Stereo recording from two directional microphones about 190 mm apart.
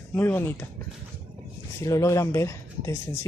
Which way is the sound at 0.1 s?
10° left (ahead or behind).